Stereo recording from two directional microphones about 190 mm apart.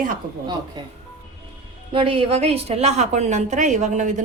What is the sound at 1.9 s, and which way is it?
A woman's voice, 30° right (ahead or behind).